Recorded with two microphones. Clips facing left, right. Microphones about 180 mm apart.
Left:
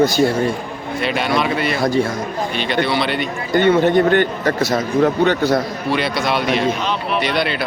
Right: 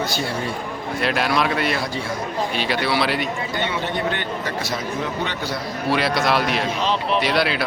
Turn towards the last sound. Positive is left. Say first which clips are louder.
# left 1 dB
turn(degrees=0)  # may be behind; listen again after turning